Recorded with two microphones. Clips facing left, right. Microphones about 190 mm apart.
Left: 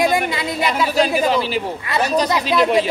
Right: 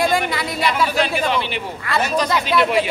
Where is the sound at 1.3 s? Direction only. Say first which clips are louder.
Left 3 dB; 35° left (ahead or behind).